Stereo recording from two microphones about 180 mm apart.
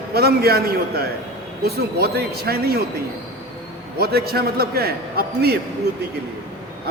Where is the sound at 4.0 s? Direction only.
60° right (ahead or behind).